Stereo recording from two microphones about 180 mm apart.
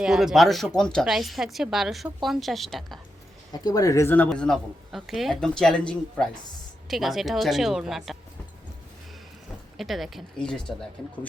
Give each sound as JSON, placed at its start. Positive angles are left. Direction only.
{"t": 0.0, "sound": "speech", "side_deg": -5}
{"t": 3.5, "sound": "speech", "side_deg": 20}
{"t": 9.7, "sound": "speech", "side_deg": 0}